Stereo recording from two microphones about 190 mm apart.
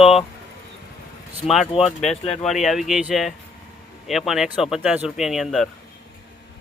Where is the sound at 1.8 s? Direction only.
35° left (ahead or behind).